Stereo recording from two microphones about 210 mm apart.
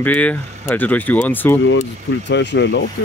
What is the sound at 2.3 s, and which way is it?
Speech, 55° left (ahead or behind).